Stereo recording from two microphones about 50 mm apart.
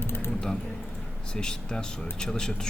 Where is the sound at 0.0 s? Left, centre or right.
Left.